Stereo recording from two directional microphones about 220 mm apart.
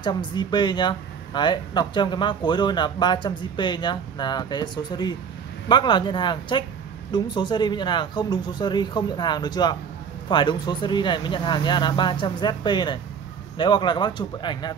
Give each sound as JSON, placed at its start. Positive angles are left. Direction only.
{"t": 0.0, "sound": "speech", "side_deg": 20}